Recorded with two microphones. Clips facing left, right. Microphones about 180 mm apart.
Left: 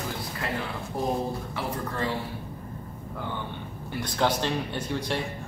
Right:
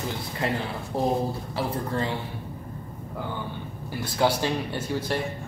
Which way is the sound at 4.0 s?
10° right (ahead or behind).